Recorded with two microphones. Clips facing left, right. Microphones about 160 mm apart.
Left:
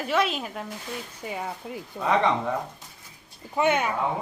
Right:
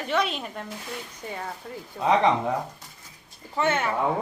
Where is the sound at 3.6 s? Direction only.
15° left (ahead or behind).